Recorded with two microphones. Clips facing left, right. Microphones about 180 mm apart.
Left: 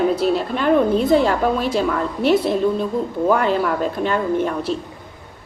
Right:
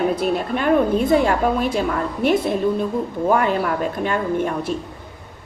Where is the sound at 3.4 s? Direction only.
10° right (ahead or behind).